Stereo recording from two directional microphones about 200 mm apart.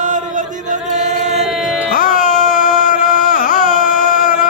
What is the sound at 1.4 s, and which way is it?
Music, centre (ahead or behind).